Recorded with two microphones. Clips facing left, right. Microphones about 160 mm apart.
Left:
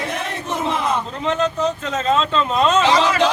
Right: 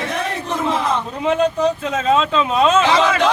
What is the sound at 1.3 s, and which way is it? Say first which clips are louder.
Speech: right 4 dB; 10° right (ahead or behind).